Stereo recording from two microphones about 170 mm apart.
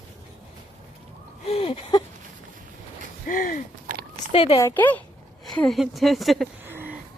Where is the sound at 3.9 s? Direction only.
50° right (ahead or behind).